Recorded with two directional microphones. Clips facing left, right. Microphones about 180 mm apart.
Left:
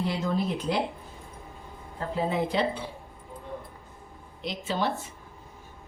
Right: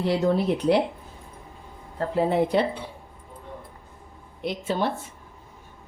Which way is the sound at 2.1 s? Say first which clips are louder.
Right 5 dB; 60° right (ahead or behind).